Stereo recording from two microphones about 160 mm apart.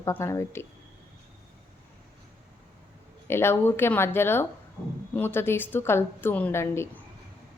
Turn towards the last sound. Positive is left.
turn(degrees=15)  # may be behind; listen again after turning